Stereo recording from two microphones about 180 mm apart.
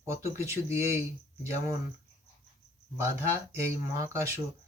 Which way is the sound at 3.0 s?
15° right (ahead or behind).